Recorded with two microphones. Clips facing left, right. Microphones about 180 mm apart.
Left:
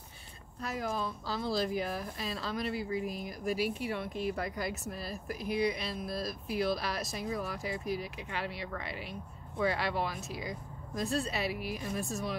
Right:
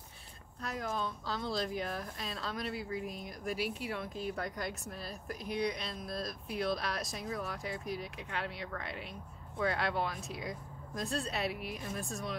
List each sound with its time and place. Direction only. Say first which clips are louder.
0.6 s speech: left 2 dB; 5° left (ahead or behind)